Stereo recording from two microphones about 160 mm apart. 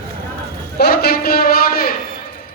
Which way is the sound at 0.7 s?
80° left.